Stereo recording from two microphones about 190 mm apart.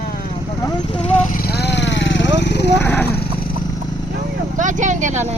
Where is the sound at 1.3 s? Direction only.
55° left (ahead or behind).